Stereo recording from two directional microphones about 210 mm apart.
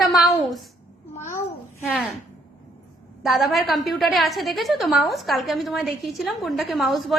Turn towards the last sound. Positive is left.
turn(degrees=0)  # may be behind; listen again after turning